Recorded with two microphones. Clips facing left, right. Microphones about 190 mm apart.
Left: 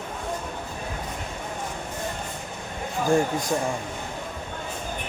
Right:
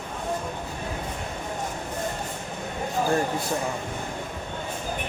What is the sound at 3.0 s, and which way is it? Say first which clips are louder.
Speech: left 5 dB; 15° left (ahead or behind).